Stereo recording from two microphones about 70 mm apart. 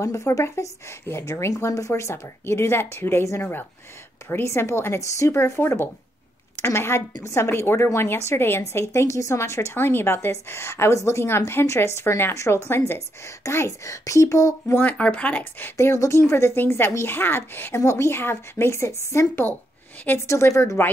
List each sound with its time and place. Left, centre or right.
0.0 s a woman's voice: left
14.8 s speech: left
15.6 s a woman's voice: left